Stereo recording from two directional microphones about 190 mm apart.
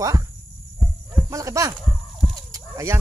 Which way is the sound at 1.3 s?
15° right (ahead or behind).